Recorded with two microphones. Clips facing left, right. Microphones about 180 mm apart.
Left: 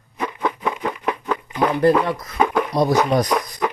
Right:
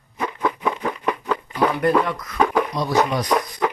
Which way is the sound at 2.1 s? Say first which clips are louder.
Left 3 dB; 30° left (ahead or behind).